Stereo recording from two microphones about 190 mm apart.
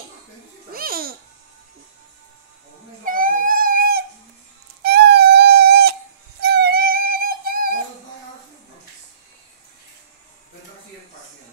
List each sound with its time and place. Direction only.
0.7 s babbling: 50° right (ahead or behind)
3.1 s a sound: 45° right (ahead or behind)
6.4 s music: 55° right (ahead or behind)